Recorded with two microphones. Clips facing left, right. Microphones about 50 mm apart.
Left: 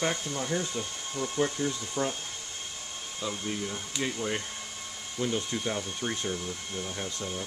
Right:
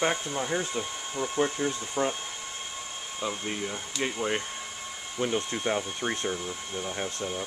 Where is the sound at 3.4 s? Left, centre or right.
Right.